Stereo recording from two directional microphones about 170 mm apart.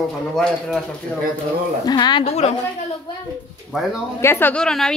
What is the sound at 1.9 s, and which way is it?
Speech, 25° left (ahead or behind).